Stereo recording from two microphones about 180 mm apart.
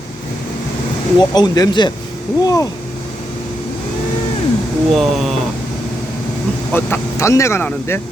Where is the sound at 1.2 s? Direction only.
25° left (ahead or behind).